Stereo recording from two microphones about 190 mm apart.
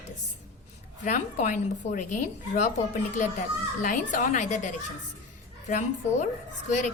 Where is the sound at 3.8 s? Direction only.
45° left (ahead or behind).